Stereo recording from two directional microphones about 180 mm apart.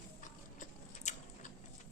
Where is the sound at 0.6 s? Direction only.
40° left (ahead or behind).